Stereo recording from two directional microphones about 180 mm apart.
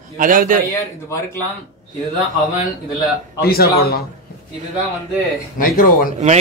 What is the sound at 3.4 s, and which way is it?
Speech, 60° left (ahead or behind).